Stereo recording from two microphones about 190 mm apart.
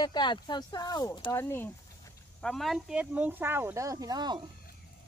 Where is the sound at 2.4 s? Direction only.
Centre (ahead or behind); by 4.3 s 20° right (ahead or behind).